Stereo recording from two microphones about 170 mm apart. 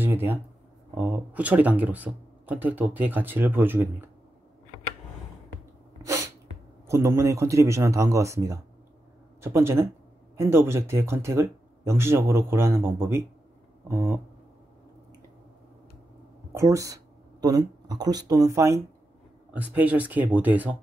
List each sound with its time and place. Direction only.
0.0 s speech: 10° right (ahead or behind)
6.0 s sneeze: 15° right (ahead or behind)
6.9 s speech: 15° right (ahead or behind)
16.5 s speech: 20° right (ahead or behind)